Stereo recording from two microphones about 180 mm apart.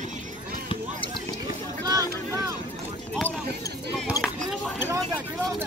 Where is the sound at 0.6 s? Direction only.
30° left (ahead or behind).